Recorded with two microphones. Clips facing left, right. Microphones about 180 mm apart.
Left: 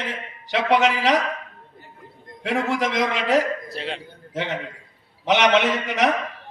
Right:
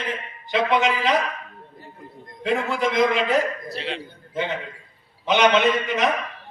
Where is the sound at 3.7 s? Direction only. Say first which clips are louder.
Right 1 dB; 45° left (ahead or behind).